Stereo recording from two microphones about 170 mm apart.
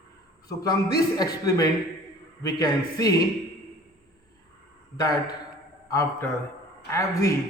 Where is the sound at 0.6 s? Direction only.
20° left (ahead or behind).